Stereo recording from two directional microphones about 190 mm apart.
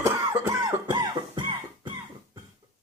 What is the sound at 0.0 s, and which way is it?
Music, 20° right (ahead or behind).